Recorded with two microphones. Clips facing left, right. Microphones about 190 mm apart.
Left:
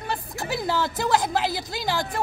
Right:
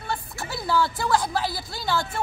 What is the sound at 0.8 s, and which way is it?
Speech, 40° left (ahead or behind).